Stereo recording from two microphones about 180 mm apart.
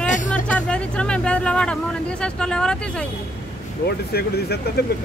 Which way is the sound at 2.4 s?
5° left (ahead or behind).